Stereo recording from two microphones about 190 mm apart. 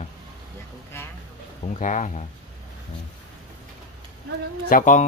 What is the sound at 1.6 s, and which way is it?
Speech, 40° left (ahead or behind).